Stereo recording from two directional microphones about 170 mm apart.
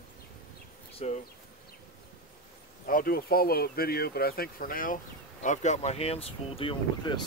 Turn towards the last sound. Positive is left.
turn(degrees=30)  # may be behind; listen again after turning